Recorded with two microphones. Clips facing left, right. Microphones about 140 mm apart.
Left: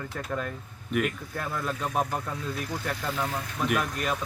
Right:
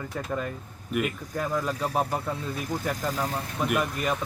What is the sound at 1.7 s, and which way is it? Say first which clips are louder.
Speech: right 2 dB; 35° right (ahead or behind).